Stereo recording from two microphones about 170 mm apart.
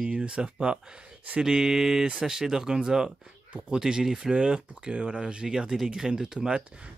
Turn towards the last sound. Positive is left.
turn(degrees=-5)  # may be behind; listen again after turning